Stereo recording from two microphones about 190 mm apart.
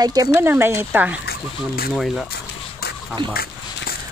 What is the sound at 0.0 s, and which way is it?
Speech, 20° right (ahead or behind).